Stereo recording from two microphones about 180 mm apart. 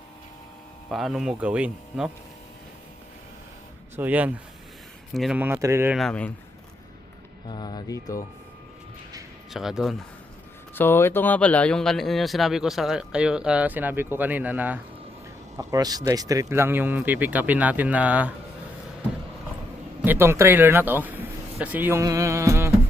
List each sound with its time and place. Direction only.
0.9 s speech: centre (ahead or behind)
3.9 s speech: 10° right (ahead or behind)
5.4 s speech: 15° right (ahead or behind)
6.0 s speech: 5° left (ahead or behind)
7.4 s speech: 25° left (ahead or behind)
9.5 s speech: centre (ahead or behind)
10.8 s speech: 15° left (ahead or behind); by 14.8 s 10° right (ahead or behind)
15.5 s speech: 20° right (ahead or behind)
20.0 s speech: 10° right (ahead or behind)